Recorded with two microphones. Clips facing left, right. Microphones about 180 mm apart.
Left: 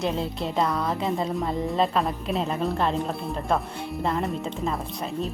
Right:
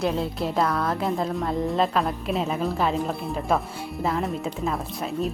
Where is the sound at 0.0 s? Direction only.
Centre (ahead or behind).